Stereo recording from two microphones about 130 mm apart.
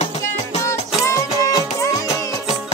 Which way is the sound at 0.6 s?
25° left (ahead or behind).